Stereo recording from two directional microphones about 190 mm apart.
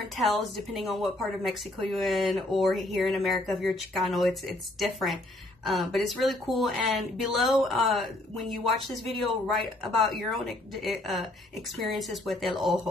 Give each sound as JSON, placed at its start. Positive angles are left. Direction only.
{"t": 0.7, "sound": "speech", "side_deg": 0}